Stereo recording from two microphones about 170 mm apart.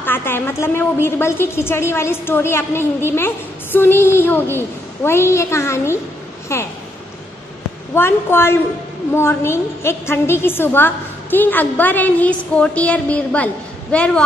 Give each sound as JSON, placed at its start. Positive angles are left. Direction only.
{"t": 0.0, "sound": "a woman's voice", "side_deg": 10}
{"t": 7.9, "sound": "a woman's voice", "side_deg": 15}